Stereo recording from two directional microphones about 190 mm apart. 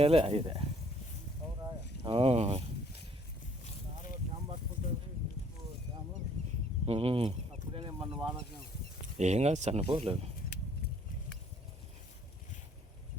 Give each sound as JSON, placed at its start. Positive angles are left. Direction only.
{"t": 0.0, "sound": "speech", "side_deg": -30}
{"t": 2.0, "sound": "speech", "side_deg": -30}
{"t": 6.8, "sound": "speech", "side_deg": -30}
{"t": 7.8, "sound": "a sound", "side_deg": -25}
{"t": 9.1, "sound": "speech", "side_deg": -35}